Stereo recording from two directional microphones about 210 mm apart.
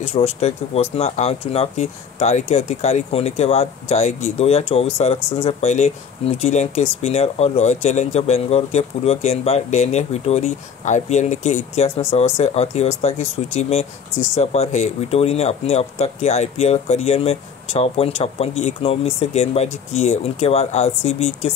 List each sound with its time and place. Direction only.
0.0 s speech: 30° left (ahead or behind)